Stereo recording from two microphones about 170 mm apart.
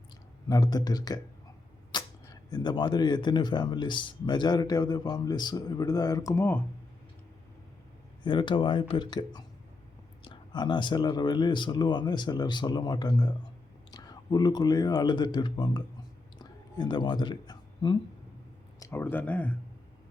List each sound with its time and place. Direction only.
0.4 s speech: 20° left (ahead or behind)
8.2 s speech: 25° left (ahead or behind)
16.4 s a sound: 25° left (ahead or behind)
18.8 s speech: 15° left (ahead or behind)